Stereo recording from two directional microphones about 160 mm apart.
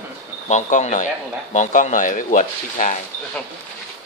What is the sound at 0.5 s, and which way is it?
Speech, 50° left (ahead or behind).